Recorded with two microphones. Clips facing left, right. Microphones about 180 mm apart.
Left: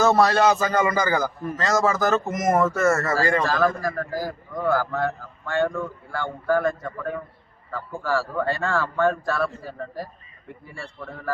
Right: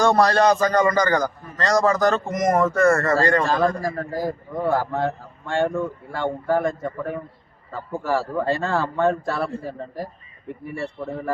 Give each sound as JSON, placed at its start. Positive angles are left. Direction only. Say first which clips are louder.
{"t": 0.0, "sound": "a man's voice", "louder": "right 1 dB", "side_deg": 5}
{"t": 3.4, "sound": "a man's voice", "louder": "right 1 dB", "side_deg": -25}